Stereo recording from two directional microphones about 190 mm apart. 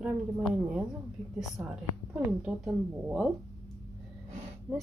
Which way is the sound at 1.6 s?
10° right (ahead or behind).